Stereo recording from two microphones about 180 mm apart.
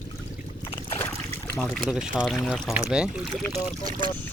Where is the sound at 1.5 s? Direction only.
Centre (ahead or behind).